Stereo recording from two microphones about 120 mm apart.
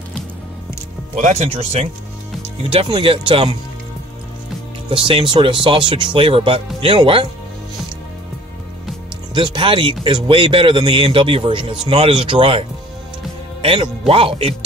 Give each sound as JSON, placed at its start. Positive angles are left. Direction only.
{"t": 1.1, "sound": "speech", "side_deg": -80}
{"t": 2.6, "sound": "speech", "side_deg": -50}
{"t": 4.8, "sound": "speech", "side_deg": -45}
{"t": 9.3, "sound": "speech", "side_deg": -45}